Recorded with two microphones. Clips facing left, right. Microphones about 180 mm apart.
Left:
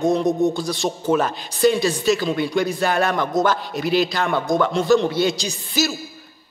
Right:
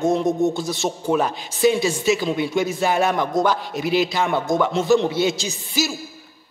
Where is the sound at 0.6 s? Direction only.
5° right (ahead or behind).